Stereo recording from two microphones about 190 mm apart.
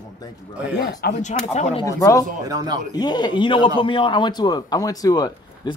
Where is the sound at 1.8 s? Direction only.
15° left (ahead or behind).